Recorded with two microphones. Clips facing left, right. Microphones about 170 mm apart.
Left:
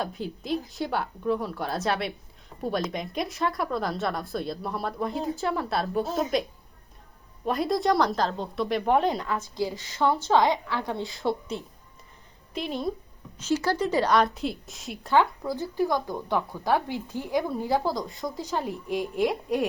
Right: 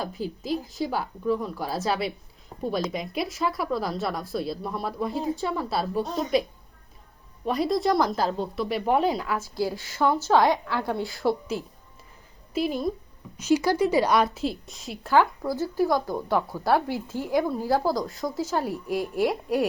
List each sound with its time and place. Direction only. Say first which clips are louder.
0.0 s a woman's voice: right 1 dB; centre (ahead or behind)
7.4 s a woman's voice: right 1 dB; centre (ahead or behind)
10.9 s speech: right 3 dB; 20° left (ahead or behind)
11.2 s a woman's voice: right 3 dB; 5° right (ahead or behind)